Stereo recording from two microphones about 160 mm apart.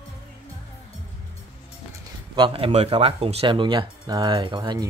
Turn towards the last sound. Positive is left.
turn(degrees=-25)  # may be behind; listen again after turning